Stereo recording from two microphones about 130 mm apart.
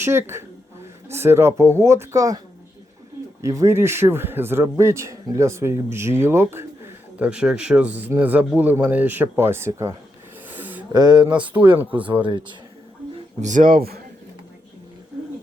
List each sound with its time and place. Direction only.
0.0 s a man's voice: 20° right (ahead or behind)
3.4 s a man's voice: 25° right (ahead or behind)
7.2 s speech: 10° right (ahead or behind)
10.5 s a sound: 15° right (ahead or behind)
10.9 s speech: 35° right (ahead or behind)
11.3 s speech: 10° right (ahead or behind)
12.0 s speech: 40° right (ahead or behind)
13.4 s speech: 80° right